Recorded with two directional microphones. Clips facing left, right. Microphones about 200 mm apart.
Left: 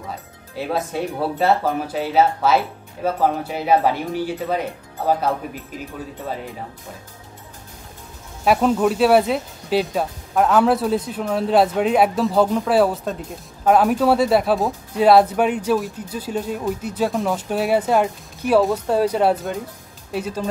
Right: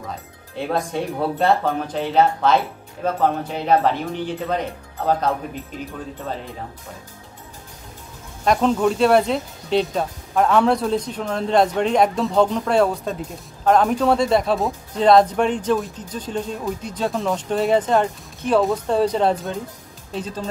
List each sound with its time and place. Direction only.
0.6 s speech: 5° left (ahead or behind)
8.5 s speech: 5° left (ahead or behind)